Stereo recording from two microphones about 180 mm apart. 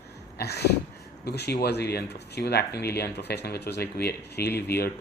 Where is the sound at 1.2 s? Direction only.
65° left (ahead or behind).